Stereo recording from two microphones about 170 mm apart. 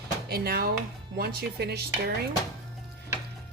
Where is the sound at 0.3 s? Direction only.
65° right (ahead or behind).